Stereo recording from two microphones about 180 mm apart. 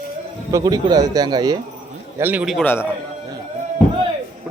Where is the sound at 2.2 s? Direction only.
10° right (ahead or behind).